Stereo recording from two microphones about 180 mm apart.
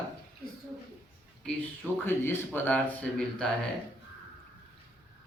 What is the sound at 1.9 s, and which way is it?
Speech, 10° left (ahead or behind).